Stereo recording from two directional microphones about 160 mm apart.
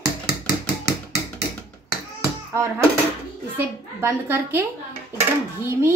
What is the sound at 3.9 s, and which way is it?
Speech, 15° right (ahead or behind).